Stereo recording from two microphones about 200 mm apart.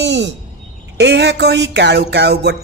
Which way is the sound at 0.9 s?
65° right (ahead or behind).